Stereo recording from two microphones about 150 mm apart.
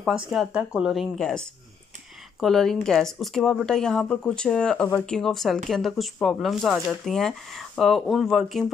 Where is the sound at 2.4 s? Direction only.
Centre (ahead or behind).